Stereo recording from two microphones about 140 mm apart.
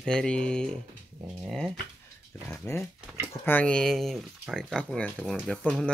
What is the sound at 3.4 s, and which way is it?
Speech, 10° left (ahead or behind).